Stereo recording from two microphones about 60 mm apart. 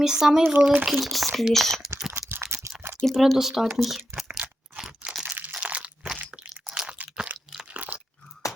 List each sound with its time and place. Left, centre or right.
0.0 s speech: centre
0.5 s speech: right
0.9 s speech: centre
2.3 s rattle: right
3.0 s speech: centre
4.4 s crunch: centre
5.3 s crunch: right
5.6 s crunch: centre
6.7 s crunch: centre
7.7 s crunch: right